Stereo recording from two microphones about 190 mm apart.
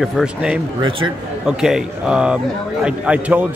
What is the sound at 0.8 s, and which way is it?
Speech, 25° right (ahead or behind).